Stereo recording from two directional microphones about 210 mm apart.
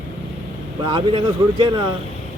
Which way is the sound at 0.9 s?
20° right (ahead or behind).